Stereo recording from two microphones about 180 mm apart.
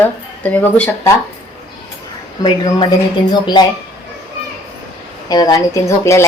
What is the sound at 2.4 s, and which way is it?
Speech, 25° left (ahead or behind).